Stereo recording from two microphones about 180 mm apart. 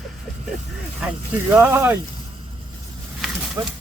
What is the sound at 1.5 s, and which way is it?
Speech, 10° right (ahead or behind).